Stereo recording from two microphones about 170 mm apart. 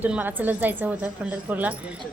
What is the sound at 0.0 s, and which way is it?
A woman's voice, 10° right (ahead or behind).